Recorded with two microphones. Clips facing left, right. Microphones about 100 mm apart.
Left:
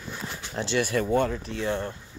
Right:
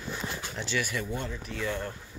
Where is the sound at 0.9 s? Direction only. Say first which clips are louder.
Left 10 dB; 45° left (ahead or behind).